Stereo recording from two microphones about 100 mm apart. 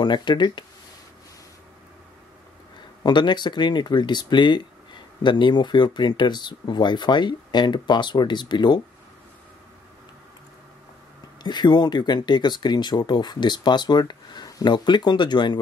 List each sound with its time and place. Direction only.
0.0 s speech: 50° left (ahead or behind)
3.0 s speech: 50° left (ahead or behind)
11.4 s speech: 45° left (ahead or behind)